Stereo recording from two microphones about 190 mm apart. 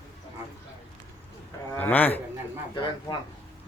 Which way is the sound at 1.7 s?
10° left (ahead or behind).